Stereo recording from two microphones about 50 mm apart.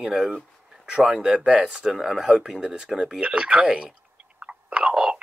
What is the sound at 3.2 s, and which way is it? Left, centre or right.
Speech, centre.